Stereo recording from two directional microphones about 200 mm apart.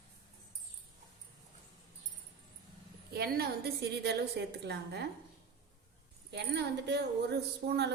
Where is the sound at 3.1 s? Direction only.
50° right (ahead or behind).